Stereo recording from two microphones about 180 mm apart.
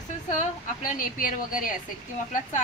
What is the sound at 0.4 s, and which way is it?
Speech, 50° left (ahead or behind).